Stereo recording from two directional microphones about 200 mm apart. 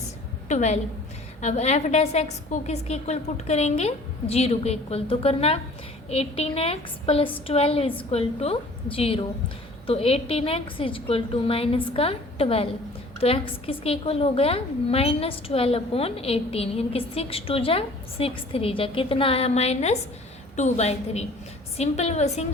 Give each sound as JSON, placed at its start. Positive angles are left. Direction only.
{"t": 0.4, "sound": "a woman's voice", "side_deg": 35}